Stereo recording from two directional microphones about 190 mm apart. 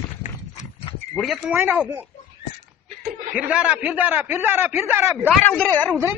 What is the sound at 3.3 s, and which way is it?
A man's voice, 5° right (ahead or behind).